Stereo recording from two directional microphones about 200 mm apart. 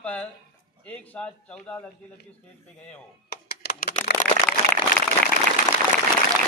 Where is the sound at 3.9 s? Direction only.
35° left (ahead or behind).